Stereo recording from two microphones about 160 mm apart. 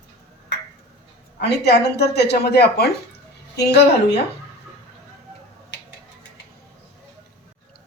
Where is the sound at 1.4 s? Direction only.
90° left.